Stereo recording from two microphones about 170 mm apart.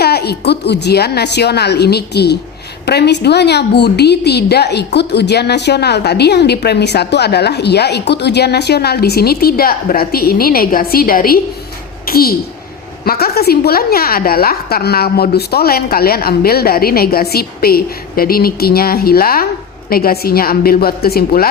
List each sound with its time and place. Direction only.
0.0 s a woman's voice: 70° left (ahead or behind)